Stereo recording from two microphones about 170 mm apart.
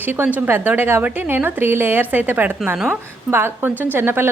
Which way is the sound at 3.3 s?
15° right (ahead or behind).